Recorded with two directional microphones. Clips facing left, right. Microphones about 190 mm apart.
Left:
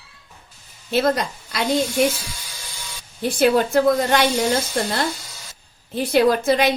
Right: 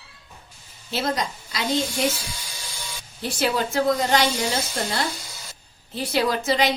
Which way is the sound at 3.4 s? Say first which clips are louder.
Left 6 dB; 55° left (ahead or behind).